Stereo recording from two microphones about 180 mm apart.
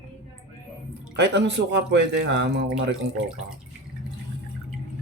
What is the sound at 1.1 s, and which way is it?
Speech, 70° right (ahead or behind).